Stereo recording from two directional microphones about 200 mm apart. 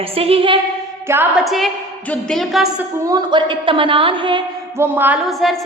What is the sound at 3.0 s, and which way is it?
A woman's voice, 20° right (ahead or behind).